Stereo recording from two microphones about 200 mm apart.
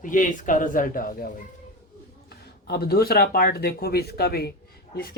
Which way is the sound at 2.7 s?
50° left (ahead or behind).